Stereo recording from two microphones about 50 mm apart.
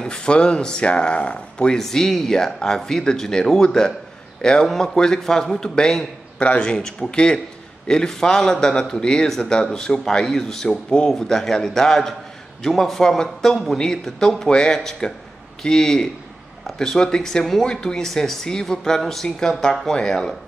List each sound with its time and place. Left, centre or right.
0.0 s speech: centre